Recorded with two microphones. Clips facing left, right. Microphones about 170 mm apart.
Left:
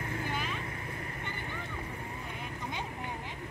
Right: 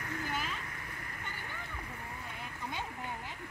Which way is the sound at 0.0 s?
25° left (ahead or behind).